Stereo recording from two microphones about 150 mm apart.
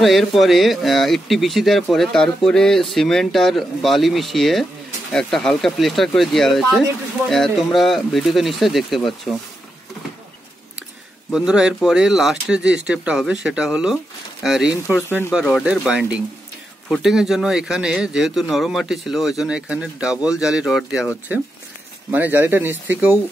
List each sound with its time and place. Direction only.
0.0 s speech: centre (ahead or behind)
11.3 s speech: 5° right (ahead or behind)
15.0 s speech: 15° left (ahead or behind)
15.4 s speech: 5° right (ahead or behind)
22.1 s speech: 10° right (ahead or behind)